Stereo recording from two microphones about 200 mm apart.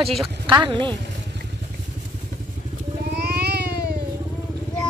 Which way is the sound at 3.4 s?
55° right (ahead or behind).